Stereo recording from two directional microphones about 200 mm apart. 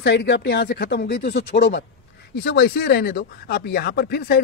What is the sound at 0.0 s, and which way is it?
Speech, 60° left (ahead or behind).